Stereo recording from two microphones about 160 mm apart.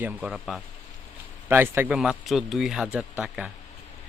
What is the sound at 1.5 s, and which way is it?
Speech, 15° right (ahead or behind).